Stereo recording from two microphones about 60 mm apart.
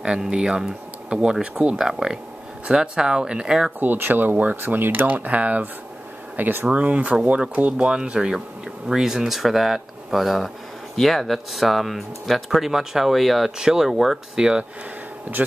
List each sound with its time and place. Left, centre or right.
0.0 s speech: centre
3.8 s speech: right
7.7 s speech: centre
14.3 s speech: centre